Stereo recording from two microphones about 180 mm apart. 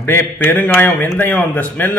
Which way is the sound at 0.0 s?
10° left (ahead or behind).